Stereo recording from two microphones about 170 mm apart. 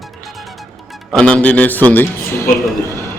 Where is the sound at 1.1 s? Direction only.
5° left (ahead or behind).